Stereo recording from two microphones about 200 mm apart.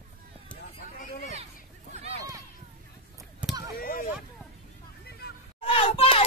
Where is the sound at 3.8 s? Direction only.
45° left (ahead or behind).